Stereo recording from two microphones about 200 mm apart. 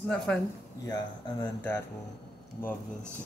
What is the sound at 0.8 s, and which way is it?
Speech, 15° left (ahead or behind).